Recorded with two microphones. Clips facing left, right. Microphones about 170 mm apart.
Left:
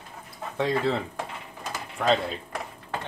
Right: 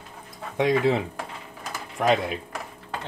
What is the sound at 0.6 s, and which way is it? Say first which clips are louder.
Speech: right 4 dB; 15° right (ahead or behind).